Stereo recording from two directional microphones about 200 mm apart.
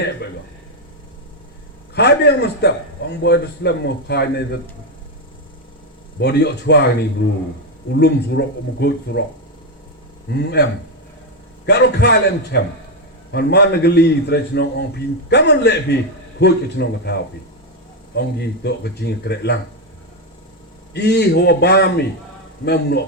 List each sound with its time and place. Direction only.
2.0 s a man's voice: 55° left (ahead or behind)
6.1 s a man's voice: 55° left (ahead or behind)
7.9 s a man's voice: 55° left (ahead or behind)
10.3 s a man's voice: 55° left (ahead or behind)
20.9 s a man's voice: 55° left (ahead or behind)